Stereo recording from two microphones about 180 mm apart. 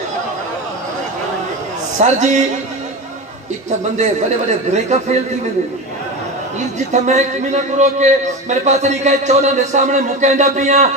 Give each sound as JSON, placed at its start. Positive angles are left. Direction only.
{"t": 2.0, "sound": "a man's voice", "side_deg": -40}
{"t": 3.9, "sound": "a man's voice", "side_deg": -40}
{"t": 6.9, "sound": "a man's voice", "side_deg": -40}